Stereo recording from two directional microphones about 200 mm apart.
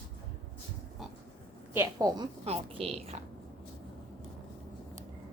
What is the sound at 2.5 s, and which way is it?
Speech, 30° right (ahead or behind).